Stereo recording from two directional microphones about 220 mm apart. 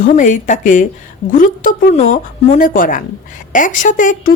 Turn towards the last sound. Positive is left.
turn(degrees=35)  # may be behind; listen again after turning